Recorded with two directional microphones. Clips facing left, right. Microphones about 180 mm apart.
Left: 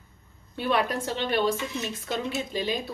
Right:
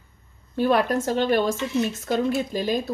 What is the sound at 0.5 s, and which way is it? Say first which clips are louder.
A woman's voice: right 6 dB; 45° right (ahead or behind).